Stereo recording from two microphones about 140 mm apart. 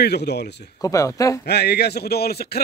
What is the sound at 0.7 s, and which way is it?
Speech, 25° left (ahead or behind).